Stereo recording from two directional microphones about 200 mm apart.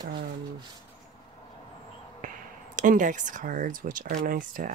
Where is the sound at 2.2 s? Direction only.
40° right (ahead or behind).